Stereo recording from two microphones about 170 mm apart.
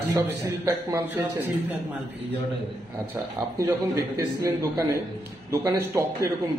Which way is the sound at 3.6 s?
15° right (ahead or behind).